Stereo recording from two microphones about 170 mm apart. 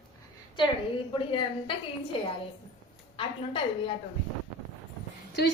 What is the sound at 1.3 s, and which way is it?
A woman's voice, 30° left (ahead or behind).